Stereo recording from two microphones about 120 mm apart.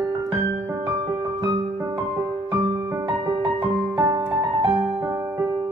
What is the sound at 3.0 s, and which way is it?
Music, 45° right (ahead or behind).